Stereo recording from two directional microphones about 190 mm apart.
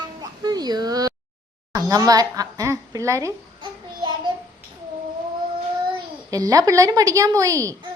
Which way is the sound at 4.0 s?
25° right (ahead or behind).